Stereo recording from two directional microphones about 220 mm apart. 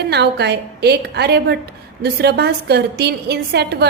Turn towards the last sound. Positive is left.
turn(degrees=-50)  # may be behind; listen again after turning